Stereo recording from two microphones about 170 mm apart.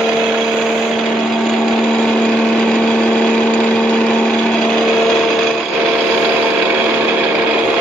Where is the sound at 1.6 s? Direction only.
5° left (ahead or behind).